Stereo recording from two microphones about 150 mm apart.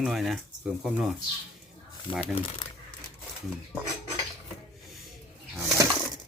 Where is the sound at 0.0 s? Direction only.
Centre (ahead or behind).